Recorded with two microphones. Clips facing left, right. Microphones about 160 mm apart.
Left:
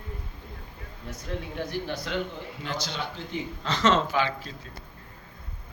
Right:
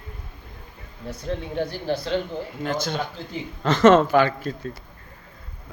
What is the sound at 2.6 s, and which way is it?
Speech, 50° right (ahead or behind).